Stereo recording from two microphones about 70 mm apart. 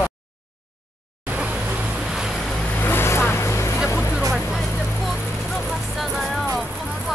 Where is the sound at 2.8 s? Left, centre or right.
Left.